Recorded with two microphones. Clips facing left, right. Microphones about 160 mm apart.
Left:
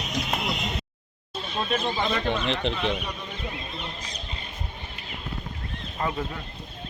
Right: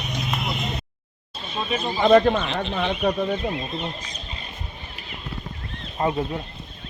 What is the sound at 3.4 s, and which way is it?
Speech, 30° right (ahead or behind).